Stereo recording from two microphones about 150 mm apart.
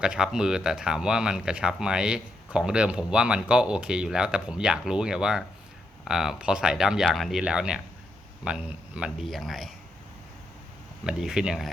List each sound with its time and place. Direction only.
0.0 s speech: 5° right (ahead or behind)
11.0 s speech: 5° right (ahead or behind)